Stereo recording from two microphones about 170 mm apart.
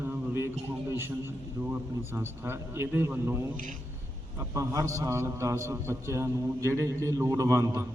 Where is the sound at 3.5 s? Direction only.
50° right (ahead or behind).